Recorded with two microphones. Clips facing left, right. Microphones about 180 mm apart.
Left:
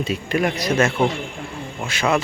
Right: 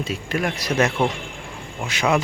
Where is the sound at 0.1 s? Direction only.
Centre (ahead or behind).